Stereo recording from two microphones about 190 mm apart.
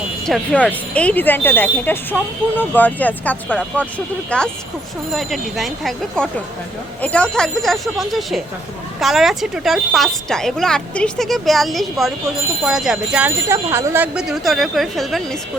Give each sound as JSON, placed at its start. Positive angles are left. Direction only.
{"t": 0.3, "sound": "speech", "side_deg": 5}